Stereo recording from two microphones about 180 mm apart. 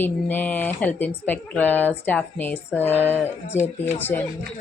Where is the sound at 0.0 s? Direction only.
10° left (ahead or behind).